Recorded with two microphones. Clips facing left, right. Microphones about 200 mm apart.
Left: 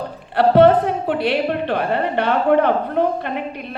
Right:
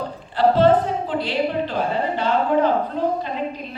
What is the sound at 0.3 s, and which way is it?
A woman's voice, 65° left (ahead or behind).